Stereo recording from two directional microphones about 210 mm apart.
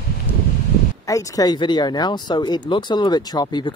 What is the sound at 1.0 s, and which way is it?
Speech, 15° left (ahead or behind).